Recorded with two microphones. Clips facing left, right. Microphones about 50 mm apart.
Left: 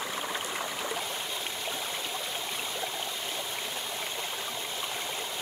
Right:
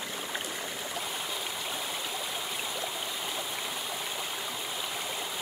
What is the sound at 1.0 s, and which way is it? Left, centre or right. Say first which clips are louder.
Stream: even; centre.